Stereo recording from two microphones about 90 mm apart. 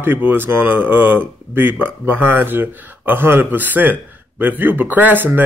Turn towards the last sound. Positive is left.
turn(degrees=-20)  # may be behind; listen again after turning